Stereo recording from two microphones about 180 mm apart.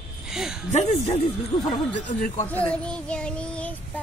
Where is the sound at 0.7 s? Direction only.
40° left (ahead or behind).